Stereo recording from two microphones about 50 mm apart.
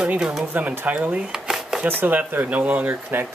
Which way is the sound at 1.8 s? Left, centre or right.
Right.